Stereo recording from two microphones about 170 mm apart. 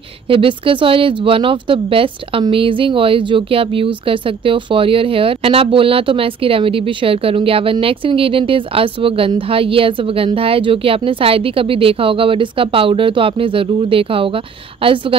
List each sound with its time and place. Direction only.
0.3 s speech: 30° right (ahead or behind)